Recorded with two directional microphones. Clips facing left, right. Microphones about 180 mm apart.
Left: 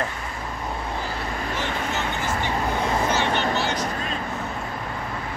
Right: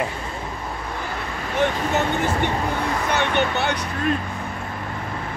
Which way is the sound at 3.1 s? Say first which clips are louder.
Right 2 dB; 60° right (ahead or behind).